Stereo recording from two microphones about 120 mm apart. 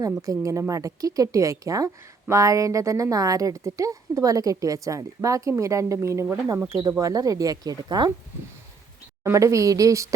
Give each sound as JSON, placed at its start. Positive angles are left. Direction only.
{"t": 0.0, "sound": "a woman's voice", "side_deg": -25}
{"t": 9.2, "sound": "a woman's voice", "side_deg": -25}